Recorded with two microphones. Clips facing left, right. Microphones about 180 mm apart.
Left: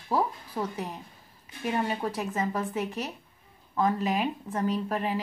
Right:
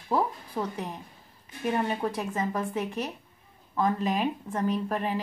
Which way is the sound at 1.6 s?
5° left (ahead or behind).